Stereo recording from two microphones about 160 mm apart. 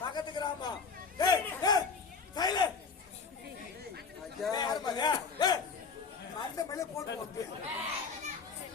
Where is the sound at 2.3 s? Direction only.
25° left (ahead or behind).